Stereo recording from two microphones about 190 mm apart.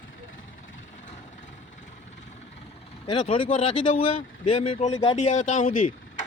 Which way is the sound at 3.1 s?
30° left (ahead or behind).